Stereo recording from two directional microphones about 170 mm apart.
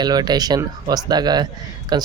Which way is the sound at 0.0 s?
25° right (ahead or behind).